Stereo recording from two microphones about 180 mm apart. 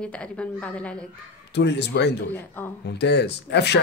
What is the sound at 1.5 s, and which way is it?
Speech, 70° left (ahead or behind).